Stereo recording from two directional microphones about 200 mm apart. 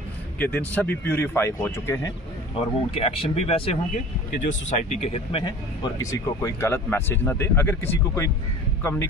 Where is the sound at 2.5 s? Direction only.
25° left (ahead or behind).